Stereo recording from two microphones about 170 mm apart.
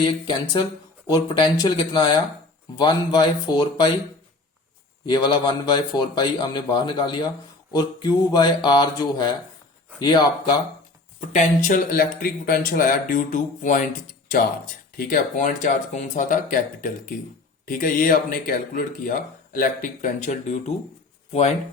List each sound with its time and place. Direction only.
0.0 s a man's voice: 25° left (ahead or behind)
5.0 s a man's voice: 25° left (ahead or behind)
11.2 s speech: 45° left (ahead or behind)
14.9 s speech: 50° left (ahead or behind)